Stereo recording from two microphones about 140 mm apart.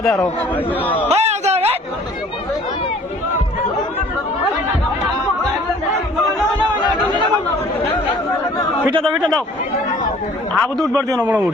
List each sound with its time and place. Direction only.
0.0 s a man's voice: 5° left (ahead or behind)
1.0 s a sound: 50° right (ahead or behind)
8.9 s a man's voice: 35° right (ahead or behind)
10.5 s a man's voice: centre (ahead or behind)